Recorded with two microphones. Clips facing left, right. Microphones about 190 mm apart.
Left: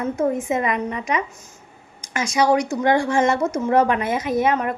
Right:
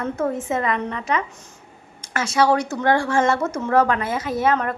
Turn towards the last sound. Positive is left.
turn(degrees=15)  # may be behind; listen again after turning